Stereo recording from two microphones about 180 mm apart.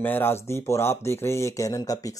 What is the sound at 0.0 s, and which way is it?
Speech, 10° left (ahead or behind).